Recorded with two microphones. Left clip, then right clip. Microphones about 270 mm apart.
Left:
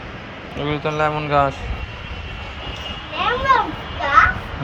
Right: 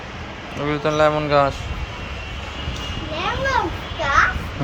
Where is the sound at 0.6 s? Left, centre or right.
Centre.